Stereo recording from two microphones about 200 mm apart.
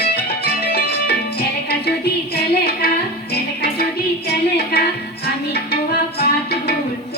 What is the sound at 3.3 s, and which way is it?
Music, 55° left (ahead or behind).